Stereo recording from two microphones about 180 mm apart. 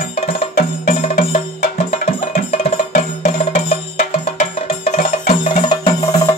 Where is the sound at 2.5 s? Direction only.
35° left (ahead or behind).